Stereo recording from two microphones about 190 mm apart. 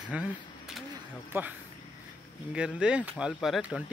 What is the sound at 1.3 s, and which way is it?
Speech, 10° right (ahead or behind).